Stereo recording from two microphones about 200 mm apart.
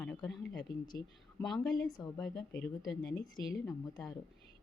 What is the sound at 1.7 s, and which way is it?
Speech, 20° left (ahead or behind).